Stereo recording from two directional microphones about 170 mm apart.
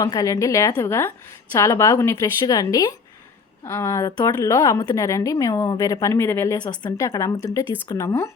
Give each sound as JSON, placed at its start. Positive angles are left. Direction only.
{"t": 0.0, "sound": "a woman's voice", "side_deg": 20}